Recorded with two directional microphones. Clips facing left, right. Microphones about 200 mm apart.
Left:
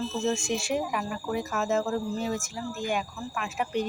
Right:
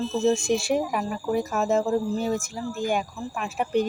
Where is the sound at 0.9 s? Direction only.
35° right (ahead or behind).